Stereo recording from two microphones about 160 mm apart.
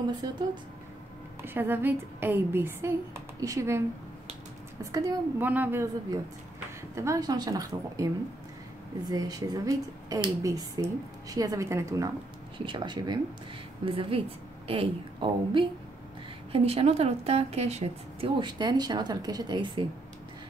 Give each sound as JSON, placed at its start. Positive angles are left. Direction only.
{"t": 0.1, "sound": "speech", "side_deg": -30}
{"t": 1.4, "sound": "a woman's voice", "side_deg": -15}
{"t": 5.4, "sound": "a woman's voice", "side_deg": -10}
{"t": 12.5, "sound": "a woman's voice", "side_deg": -30}
{"t": 18.4, "sound": "speech", "side_deg": -25}